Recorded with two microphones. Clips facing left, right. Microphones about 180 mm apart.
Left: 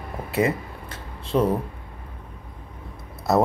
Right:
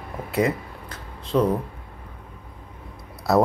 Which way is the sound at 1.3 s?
10° left (ahead or behind).